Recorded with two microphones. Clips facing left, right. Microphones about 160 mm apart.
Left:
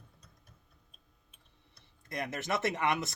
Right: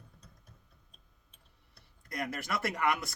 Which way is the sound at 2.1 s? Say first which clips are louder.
Left 2 dB; 20° left (ahead or behind).